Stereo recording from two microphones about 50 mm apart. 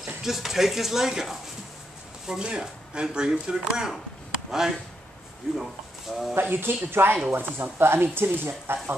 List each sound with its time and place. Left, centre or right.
0.0 s speech: centre
6.5 s speech: right
7.2 s speech: right